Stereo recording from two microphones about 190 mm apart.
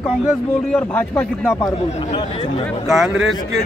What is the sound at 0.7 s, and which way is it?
Speech, 5° left (ahead or behind).